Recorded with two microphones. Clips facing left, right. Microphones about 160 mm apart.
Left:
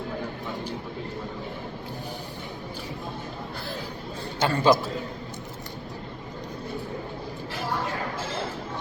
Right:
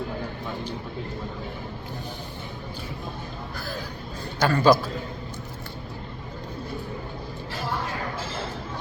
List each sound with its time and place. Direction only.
4.4 s a man's voice: 25° left (ahead or behind)